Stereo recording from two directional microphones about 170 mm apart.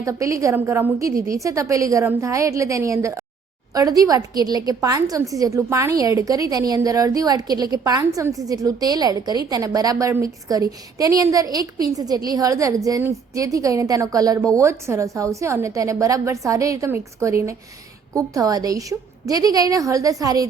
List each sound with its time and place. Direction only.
0.0 s a woman's voice: 20° right (ahead or behind)